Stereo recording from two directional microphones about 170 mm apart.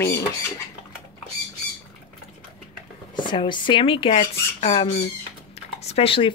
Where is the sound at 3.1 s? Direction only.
30° left (ahead or behind).